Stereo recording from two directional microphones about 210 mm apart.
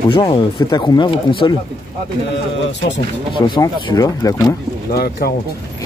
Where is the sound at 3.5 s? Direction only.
20° left (ahead or behind).